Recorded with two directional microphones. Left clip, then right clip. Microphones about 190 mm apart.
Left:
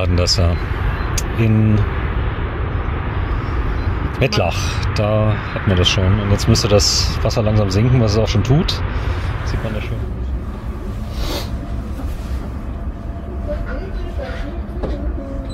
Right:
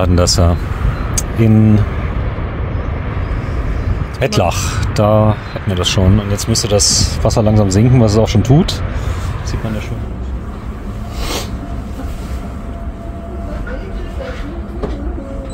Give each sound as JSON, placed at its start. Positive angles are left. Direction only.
{"t": 0.0, "sound": "speech", "side_deg": -25}
{"t": 4.2, "sound": "speech", "side_deg": -20}